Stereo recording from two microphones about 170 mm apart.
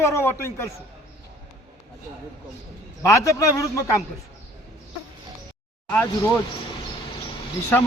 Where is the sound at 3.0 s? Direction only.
20° left (ahead or behind).